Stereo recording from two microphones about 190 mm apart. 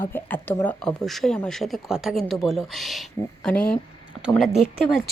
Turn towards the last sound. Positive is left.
turn(degrees=0)  # may be behind; listen again after turning